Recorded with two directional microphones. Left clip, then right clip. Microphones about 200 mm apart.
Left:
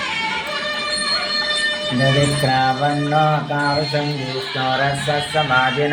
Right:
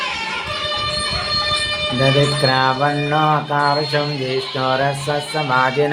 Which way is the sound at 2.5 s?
30° right (ahead or behind).